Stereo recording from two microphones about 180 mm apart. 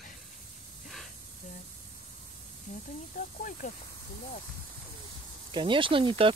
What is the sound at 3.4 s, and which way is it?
Speech, 50° left (ahead or behind).